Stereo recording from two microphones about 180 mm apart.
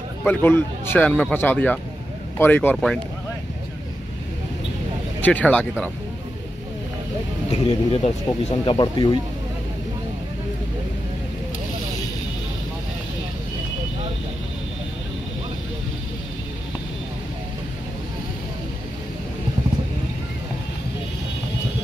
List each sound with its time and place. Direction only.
0.2 s speech: 10° left (ahead or behind)
5.2 s speech: 10° left (ahead or behind)
7.9 s speech: 35° left (ahead or behind)